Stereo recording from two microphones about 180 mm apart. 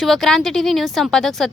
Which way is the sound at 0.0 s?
Centre (ahead or behind).